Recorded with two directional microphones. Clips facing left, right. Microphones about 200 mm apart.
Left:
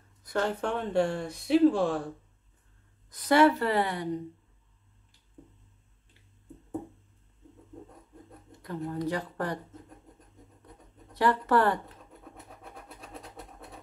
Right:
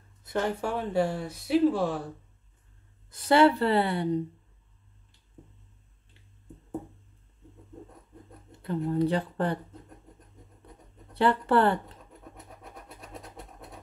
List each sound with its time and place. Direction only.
0.2 s a sound: 20° right (ahead or behind)
0.5 s speech: 10° right (ahead or behind)
3.1 s a woman's voice: 30° right (ahead or behind)
8.5 s speech: 30° right (ahead or behind)
11.1 s speech: 30° right (ahead or behind)